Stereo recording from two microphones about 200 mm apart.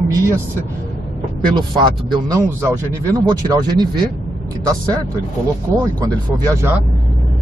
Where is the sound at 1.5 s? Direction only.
25° right (ahead or behind).